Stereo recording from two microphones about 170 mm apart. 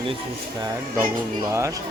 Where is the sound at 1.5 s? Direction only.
15° right (ahead or behind).